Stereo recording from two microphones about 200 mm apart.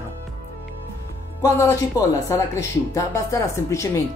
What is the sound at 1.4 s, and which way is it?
Speech, 15° left (ahead or behind).